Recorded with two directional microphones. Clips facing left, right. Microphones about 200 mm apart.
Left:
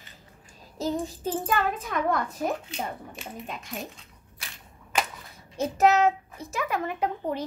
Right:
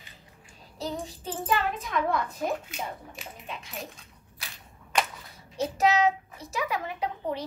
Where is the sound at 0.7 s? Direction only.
45° left (ahead or behind).